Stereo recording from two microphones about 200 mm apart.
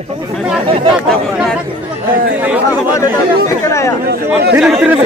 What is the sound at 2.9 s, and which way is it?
Speech, 15° left (ahead or behind).